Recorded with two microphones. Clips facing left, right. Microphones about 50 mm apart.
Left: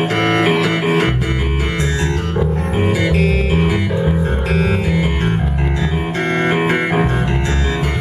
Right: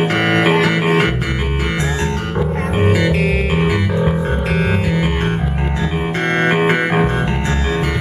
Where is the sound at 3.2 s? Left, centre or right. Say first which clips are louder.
Even; right.